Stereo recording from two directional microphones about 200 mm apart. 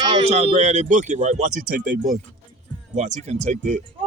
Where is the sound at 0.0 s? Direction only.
20° right (ahead or behind).